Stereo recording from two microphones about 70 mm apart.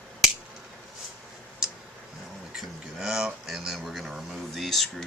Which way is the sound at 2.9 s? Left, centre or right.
Centre.